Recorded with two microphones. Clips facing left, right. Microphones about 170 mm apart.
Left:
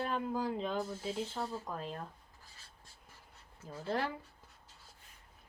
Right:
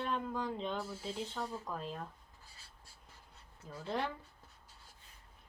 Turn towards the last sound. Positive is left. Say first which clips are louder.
# left 2 dB
turn(degrees=5)  # may be behind; listen again after turning